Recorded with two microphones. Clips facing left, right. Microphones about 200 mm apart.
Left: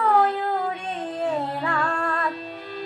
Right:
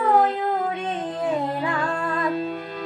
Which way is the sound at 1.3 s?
15° right (ahead or behind).